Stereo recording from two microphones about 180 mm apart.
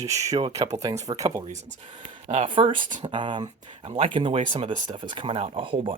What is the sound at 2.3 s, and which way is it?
Speech, 30° right (ahead or behind).